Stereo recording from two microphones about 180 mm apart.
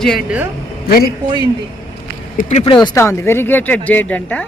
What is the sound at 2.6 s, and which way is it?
Speech, 25° left (ahead or behind).